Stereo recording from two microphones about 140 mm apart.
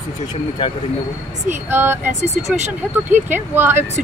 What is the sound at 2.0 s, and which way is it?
Speech, 55° right (ahead or behind).